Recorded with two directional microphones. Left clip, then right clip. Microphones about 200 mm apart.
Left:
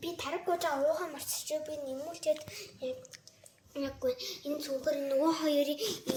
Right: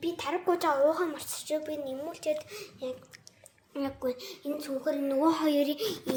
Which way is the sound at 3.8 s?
55° right (ahead or behind).